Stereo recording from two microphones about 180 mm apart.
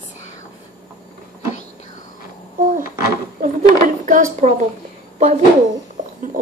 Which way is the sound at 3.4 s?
45° right (ahead or behind).